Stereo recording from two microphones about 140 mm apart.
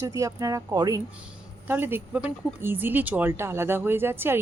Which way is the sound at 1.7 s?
15° right (ahead or behind).